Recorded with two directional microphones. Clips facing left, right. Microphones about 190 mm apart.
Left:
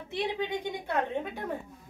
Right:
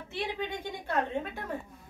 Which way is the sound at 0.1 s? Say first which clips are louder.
Left 4 dB; 15° left (ahead or behind).